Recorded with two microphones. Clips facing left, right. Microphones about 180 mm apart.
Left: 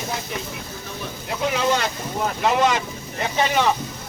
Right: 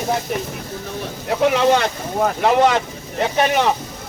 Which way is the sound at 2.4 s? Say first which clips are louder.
Right 4 dB; 60° right (ahead or behind).